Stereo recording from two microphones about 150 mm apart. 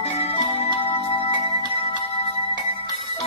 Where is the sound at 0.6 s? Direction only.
35° left (ahead or behind).